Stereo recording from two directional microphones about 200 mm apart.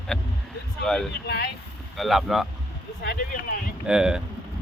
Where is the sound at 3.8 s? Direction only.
5° right (ahead or behind).